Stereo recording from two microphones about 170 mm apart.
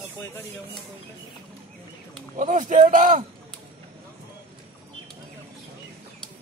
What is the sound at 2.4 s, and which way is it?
Speech, 50° right (ahead or behind).